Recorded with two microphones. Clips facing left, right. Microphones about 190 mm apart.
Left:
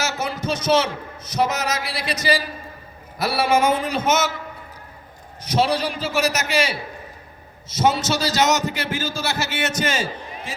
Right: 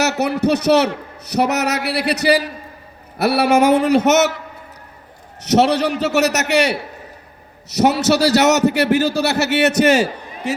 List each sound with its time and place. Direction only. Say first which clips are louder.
0.0 s a man's voice: right 9 dB; 65° right (ahead or behind)
5.4 s a man's voice: right 6 dB; 70° right (ahead or behind)